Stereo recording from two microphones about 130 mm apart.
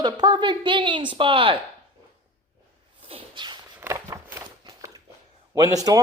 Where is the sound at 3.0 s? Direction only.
45° right (ahead or behind).